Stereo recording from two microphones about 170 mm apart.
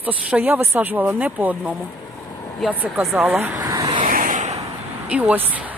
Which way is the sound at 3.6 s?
20° right (ahead or behind).